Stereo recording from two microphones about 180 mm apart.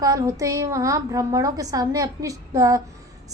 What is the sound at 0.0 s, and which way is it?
A woman's voice, 20° right (ahead or behind).